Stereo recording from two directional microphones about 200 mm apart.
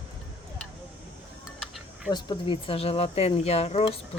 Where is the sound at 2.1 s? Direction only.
25° left (ahead or behind).